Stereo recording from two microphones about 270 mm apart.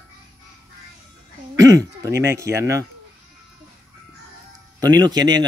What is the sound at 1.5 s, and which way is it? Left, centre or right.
Speech, centre.